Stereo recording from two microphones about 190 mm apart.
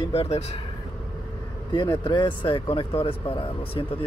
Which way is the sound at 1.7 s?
25° left (ahead or behind).